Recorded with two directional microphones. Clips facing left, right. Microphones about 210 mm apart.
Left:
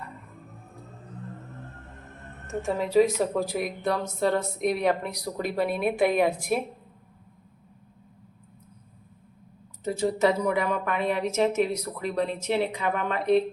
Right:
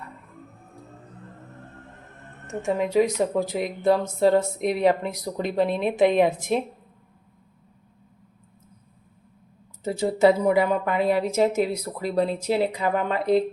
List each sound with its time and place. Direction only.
2.7 s speech: 15° right (ahead or behind)
5.1 s speech: 5° left (ahead or behind)
6.0 s speech: 20° right (ahead or behind)
9.8 s speech: 30° right (ahead or behind)